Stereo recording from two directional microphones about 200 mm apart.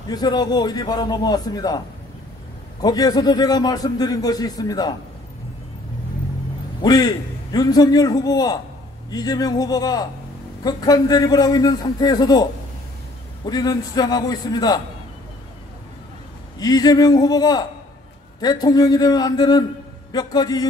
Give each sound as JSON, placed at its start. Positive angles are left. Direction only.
{"t": 0.1, "sound": "a man's voice", "side_deg": 20}
{"t": 2.8, "sound": "a man's voice", "side_deg": 20}
{"t": 6.8, "sound": "a man's voice", "side_deg": 20}
{"t": 13.5, "sound": "a man's voice", "side_deg": 20}
{"t": 16.5, "sound": "a man's voice", "side_deg": 20}